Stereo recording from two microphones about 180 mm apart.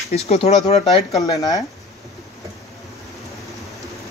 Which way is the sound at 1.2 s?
20° left (ahead or behind).